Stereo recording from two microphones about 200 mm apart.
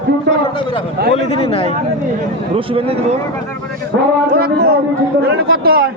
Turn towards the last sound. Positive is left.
turn(degrees=-50)  # may be behind; listen again after turning